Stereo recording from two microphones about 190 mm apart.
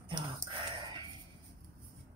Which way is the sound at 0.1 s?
25° right (ahead or behind).